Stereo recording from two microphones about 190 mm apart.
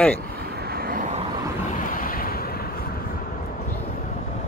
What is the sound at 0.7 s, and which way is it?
Vehicle, 50° right (ahead or behind).